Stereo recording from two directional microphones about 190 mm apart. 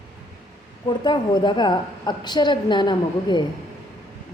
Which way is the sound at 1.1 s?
25° left (ahead or behind).